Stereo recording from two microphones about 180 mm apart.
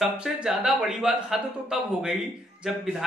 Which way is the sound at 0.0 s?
5° right (ahead or behind).